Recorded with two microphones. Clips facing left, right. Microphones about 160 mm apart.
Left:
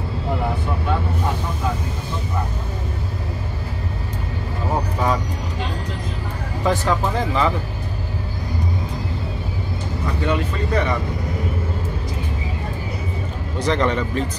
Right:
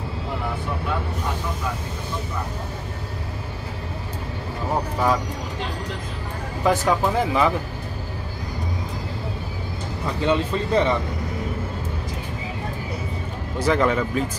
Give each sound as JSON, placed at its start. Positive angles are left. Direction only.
{"t": 6.6, "sound": "speech", "side_deg": -5}
{"t": 10.2, "sound": "speech", "side_deg": -20}
{"t": 13.6, "sound": "speech", "side_deg": -5}